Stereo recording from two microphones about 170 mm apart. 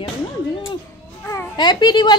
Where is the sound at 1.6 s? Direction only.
25° left (ahead or behind).